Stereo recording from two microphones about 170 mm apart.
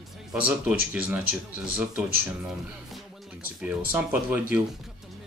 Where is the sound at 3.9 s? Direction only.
10° right (ahead or behind).